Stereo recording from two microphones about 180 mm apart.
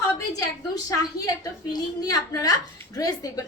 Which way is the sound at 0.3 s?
20° left (ahead or behind).